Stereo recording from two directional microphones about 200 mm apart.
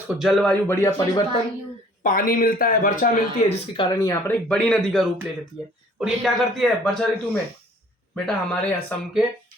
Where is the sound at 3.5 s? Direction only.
25° left (ahead or behind).